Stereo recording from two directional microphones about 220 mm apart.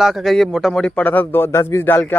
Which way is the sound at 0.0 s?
Centre (ahead or behind).